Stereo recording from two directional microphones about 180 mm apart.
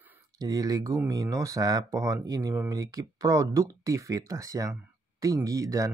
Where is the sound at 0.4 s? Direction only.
20° right (ahead or behind).